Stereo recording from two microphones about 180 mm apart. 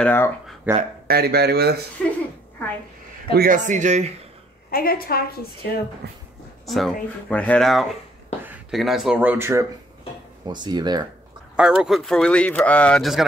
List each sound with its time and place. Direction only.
0.0 s speech: 10° left (ahead or behind)
0.7 s speech: 10° right (ahead or behind)
1.0 s speech: 60° right (ahead or behind)
2.0 s speech: 5° left (ahead or behind)
3.3 s a man's voice: 50° right (ahead or behind)
4.6 s a woman's voice: 55° left (ahead or behind)
6.6 s speech: centre (ahead or behind); by 11.1 s 25° right (ahead or behind)
11.5 s speech: 5° right (ahead or behind)